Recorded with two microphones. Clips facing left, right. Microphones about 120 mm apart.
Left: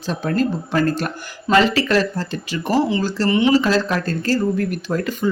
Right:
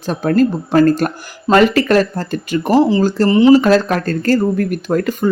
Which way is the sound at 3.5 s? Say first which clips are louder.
Right 5 dB; 50° right (ahead or behind).